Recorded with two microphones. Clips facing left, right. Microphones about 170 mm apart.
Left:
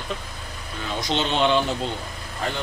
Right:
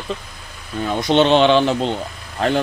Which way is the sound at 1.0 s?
70° right (ahead or behind).